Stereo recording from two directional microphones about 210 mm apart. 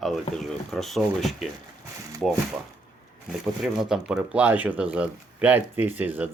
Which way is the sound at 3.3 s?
Centre (ahead or behind).